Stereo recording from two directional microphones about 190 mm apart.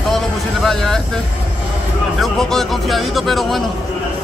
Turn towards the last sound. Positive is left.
turn(degrees=0)  # may be behind; listen again after turning